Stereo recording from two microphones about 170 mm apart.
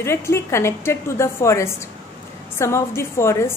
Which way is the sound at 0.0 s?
15° left (ahead or behind).